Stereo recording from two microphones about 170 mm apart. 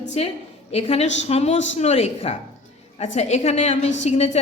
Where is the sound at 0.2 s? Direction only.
35° left (ahead or behind).